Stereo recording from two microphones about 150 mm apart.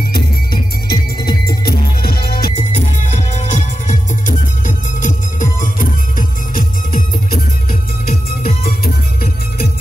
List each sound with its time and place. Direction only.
0.0 s music: 80° left
2.5 s music: 50° left (ahead or behind); by 9.7 s 80° left